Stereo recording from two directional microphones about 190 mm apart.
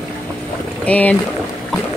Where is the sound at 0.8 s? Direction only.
10° left (ahead or behind).